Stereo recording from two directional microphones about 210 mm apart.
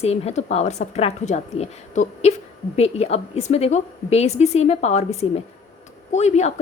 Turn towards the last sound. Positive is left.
turn(degrees=35)  # may be behind; listen again after turning